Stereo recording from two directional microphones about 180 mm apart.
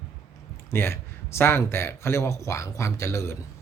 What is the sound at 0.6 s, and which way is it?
Speech, 15° left (ahead or behind).